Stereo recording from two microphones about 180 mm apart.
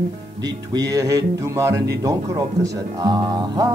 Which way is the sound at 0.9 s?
20° right (ahead or behind).